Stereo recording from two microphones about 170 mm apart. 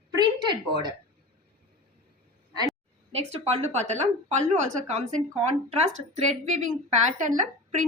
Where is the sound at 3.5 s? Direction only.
40° right (ahead or behind).